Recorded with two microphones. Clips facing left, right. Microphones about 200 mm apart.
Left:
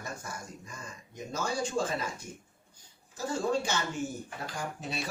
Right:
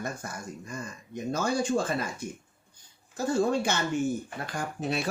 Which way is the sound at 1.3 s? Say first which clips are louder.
Right 5 dB; 60° right (ahead or behind).